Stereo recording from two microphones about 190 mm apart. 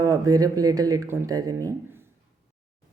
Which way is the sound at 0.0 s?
20° right (ahead or behind).